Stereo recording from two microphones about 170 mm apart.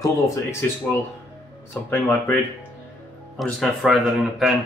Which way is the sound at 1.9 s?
10° left (ahead or behind).